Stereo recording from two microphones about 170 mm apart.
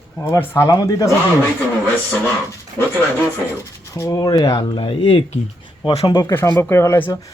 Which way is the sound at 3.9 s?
20° left (ahead or behind).